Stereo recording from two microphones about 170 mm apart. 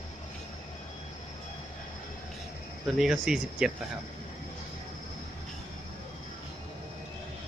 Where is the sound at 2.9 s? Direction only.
Centre (ahead or behind).